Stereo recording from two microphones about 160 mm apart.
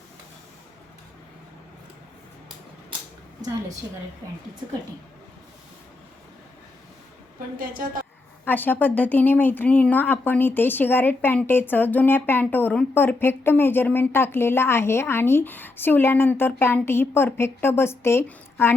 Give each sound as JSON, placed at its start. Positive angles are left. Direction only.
{"t": 7.3, "sound": "a woman's voice", "side_deg": -60}
{"t": 8.4, "sound": "speech", "side_deg": 10}